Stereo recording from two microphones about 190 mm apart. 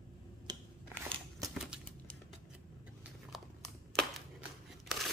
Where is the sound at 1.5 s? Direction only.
Centre (ahead or behind).